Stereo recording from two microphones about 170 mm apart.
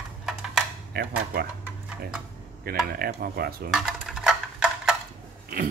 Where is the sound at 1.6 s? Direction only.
5° right (ahead or behind).